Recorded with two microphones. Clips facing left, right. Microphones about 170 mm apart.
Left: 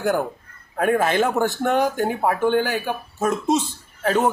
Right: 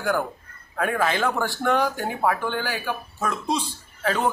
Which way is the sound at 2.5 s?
50° left (ahead or behind).